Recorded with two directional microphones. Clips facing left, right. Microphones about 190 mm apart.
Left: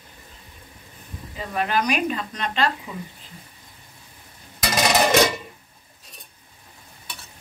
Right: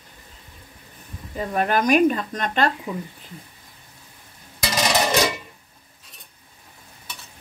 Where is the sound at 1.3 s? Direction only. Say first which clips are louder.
Right 3 dB; 50° right (ahead or behind).